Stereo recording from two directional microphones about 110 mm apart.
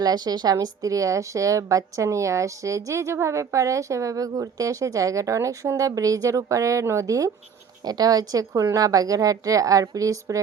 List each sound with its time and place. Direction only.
0.0 s a woman's voice: 35° right (ahead or behind)